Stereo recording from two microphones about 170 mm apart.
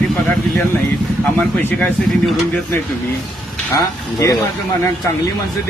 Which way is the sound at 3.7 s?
20° left (ahead or behind).